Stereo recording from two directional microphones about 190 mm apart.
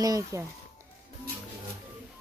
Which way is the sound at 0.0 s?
20° right (ahead or behind).